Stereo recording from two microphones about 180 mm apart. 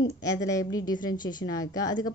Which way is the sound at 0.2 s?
20° left (ahead or behind).